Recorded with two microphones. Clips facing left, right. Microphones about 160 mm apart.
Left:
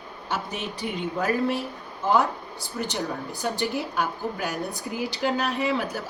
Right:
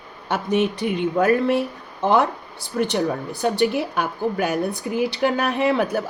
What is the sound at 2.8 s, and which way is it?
Speech, 65° right (ahead or behind).